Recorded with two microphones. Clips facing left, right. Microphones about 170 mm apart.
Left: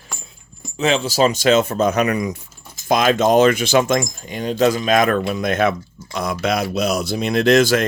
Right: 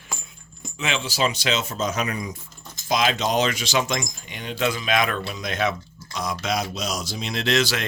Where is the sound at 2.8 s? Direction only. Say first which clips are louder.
Left 7 dB; 50° left (ahead or behind).